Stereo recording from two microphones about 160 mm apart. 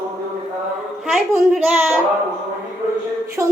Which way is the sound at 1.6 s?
5° right (ahead or behind).